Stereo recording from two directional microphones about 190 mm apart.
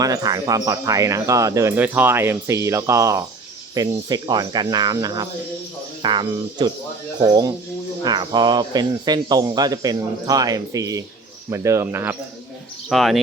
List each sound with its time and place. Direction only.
0.0 s speech: 20° right (ahead or behind)
12.9 s speech: centre (ahead or behind)